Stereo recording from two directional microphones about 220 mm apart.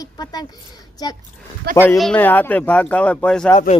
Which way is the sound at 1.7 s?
45° right (ahead or behind).